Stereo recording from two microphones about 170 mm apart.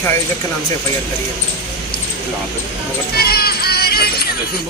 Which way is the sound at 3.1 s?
65° left (ahead or behind).